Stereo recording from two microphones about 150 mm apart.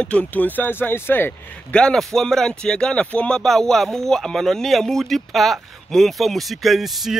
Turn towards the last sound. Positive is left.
turn(degrees=0)  # may be behind; listen again after turning